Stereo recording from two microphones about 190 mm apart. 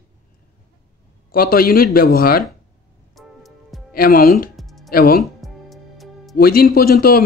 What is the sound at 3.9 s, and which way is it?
Speech, 50° left (ahead or behind).